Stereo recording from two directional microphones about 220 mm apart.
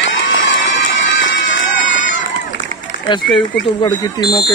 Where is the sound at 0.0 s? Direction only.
55° left (ahead or behind).